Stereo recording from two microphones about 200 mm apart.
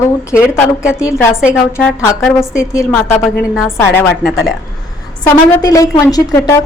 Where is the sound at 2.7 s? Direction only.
15° left (ahead or behind).